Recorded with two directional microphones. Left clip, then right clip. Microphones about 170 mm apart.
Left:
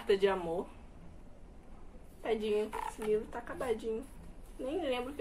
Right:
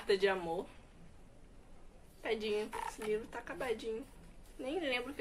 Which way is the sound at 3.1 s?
20° right (ahead or behind).